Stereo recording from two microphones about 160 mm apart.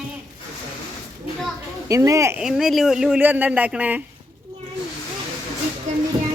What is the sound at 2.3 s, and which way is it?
Speech, 5° right (ahead or behind).